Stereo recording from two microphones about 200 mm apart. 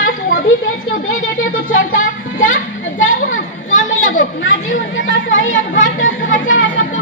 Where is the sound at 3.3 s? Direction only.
75° left (ahead or behind).